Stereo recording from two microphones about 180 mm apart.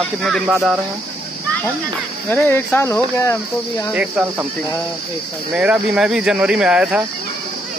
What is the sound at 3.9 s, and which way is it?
Speech, 10° right (ahead or behind).